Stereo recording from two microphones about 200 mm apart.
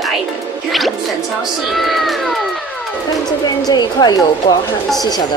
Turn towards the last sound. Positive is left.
turn(degrees=20)  # may be behind; listen again after turning